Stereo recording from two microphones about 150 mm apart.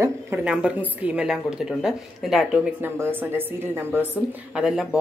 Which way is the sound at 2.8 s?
15° right (ahead or behind).